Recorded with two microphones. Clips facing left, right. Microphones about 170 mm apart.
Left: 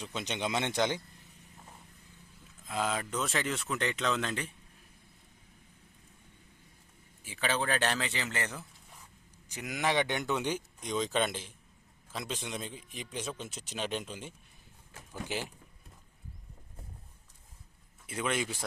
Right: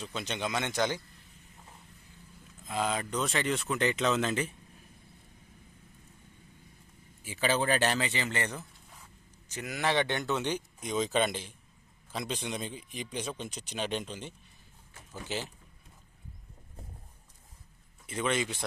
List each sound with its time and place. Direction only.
0.0 s a man's voice: 20° left (ahead or behind)
2.6 s speech: centre (ahead or behind)
7.3 s speech: 5° right (ahead or behind)
9.5 s a man's voice: 15° left (ahead or behind)
10.8 s a man's voice: 5° right (ahead or behind); by 15.5 s 15° left (ahead or behind)
18.0 s speech: 10° left (ahead or behind)